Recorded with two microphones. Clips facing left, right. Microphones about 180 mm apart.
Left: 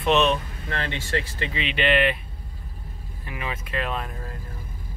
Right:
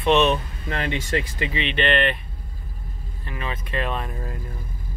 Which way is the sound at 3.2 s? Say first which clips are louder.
Right 1 dB; 10° left (ahead or behind).